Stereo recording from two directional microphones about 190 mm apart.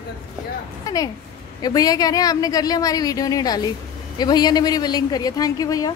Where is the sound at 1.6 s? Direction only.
20° left (ahead or behind).